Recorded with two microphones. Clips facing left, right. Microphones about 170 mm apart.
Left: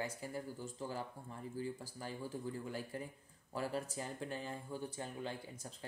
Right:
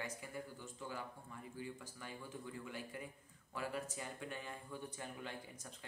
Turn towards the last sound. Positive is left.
turn(degrees=30)  # may be behind; listen again after turning